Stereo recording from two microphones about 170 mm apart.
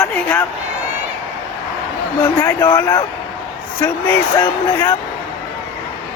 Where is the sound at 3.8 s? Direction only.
10° left (ahead or behind).